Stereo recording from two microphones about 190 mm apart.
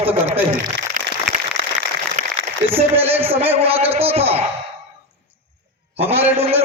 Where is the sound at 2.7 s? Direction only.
30° right (ahead or behind).